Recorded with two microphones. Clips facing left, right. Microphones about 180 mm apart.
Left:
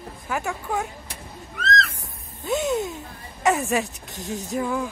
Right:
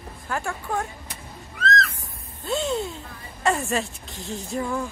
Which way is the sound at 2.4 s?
15° left (ahead or behind).